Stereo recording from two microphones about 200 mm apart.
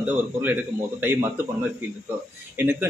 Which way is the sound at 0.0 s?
10° right (ahead or behind).